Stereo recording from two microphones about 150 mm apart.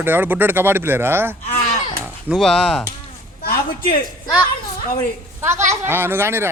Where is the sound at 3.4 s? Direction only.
90° left.